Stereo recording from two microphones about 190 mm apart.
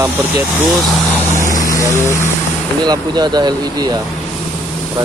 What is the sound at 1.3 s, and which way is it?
Vehicle, 40° left (ahead or behind).